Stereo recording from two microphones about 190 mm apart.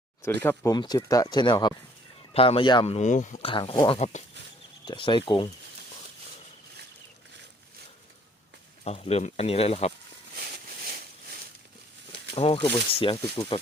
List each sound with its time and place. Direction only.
0.3 s speech: 15° left (ahead or behind); by 3.4 s 40° left (ahead or behind)
3.4 s speech: 25° left (ahead or behind)
8.8 s speech: 35° left (ahead or behind)
10.3 s a sound: 55° right (ahead or behind)
12.3 s speech: 30° left (ahead or behind)